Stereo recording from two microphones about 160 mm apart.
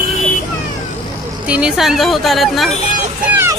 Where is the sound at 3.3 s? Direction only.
15° right (ahead or behind).